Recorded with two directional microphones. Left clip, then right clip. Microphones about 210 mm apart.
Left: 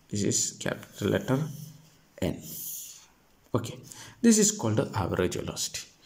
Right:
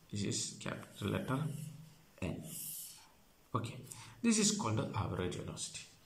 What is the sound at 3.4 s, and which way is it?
Speech, 35° left (ahead or behind).